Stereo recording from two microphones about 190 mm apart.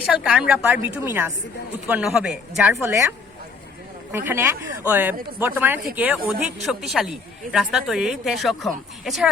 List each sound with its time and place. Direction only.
0.1 s a woman's voice: 5° right (ahead or behind)
2.8 s speech: 15° right (ahead or behind)
4.1 s a woman's voice: 10° right (ahead or behind)